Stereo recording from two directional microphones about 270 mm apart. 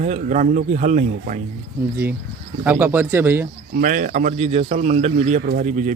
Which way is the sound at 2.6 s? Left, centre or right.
Centre.